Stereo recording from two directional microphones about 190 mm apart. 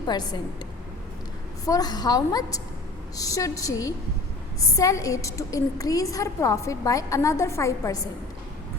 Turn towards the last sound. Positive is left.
turn(degrees=15)  # may be behind; listen again after turning